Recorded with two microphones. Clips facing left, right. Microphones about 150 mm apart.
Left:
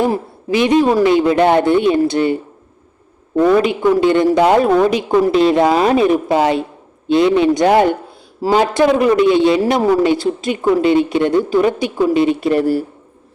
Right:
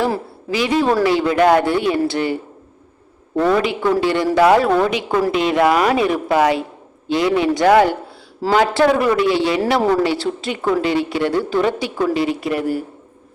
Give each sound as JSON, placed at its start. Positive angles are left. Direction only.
{"t": 0.0, "sound": "a woman's voice", "side_deg": 20}
{"t": 3.3, "sound": "a woman's voice", "side_deg": 10}
{"t": 5.3, "sound": "a woman's voice", "side_deg": 35}